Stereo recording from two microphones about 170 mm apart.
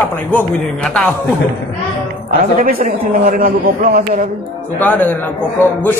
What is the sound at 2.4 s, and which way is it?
A man's voice, 55° right (ahead or behind).